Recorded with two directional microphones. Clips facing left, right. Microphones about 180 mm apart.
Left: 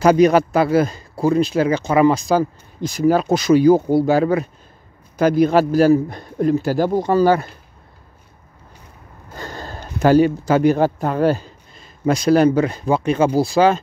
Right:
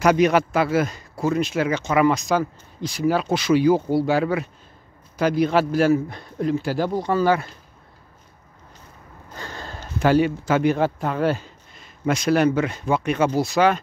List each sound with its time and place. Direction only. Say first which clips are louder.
0.0 s speech: left 4 dB; 35° left (ahead or behind)
2.8 s speech: left 5 dB; 45° left (ahead or behind)
9.3 s speech: left 4 dB; 40° left (ahead or behind)